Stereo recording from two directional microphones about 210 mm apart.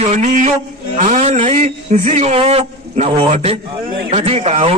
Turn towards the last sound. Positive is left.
turn(degrees=-30)  # may be behind; listen again after turning